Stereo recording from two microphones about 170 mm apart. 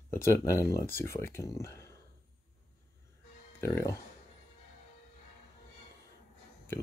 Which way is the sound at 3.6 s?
20° left (ahead or behind).